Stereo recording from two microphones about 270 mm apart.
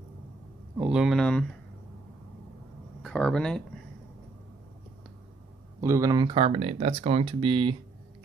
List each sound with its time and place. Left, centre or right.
0.7 s speech: centre
3.0 s a sound: centre
5.8 s speech: centre